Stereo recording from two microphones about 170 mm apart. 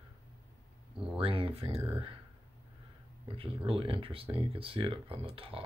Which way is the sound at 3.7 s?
35° right (ahead or behind).